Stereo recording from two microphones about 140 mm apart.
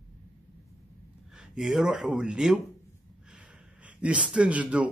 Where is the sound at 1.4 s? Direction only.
Centre (ahead or behind).